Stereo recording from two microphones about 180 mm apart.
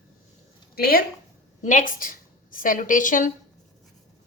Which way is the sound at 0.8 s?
55° left (ahead or behind).